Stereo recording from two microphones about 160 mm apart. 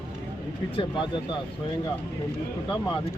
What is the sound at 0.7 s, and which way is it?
Speech, 30° left (ahead or behind).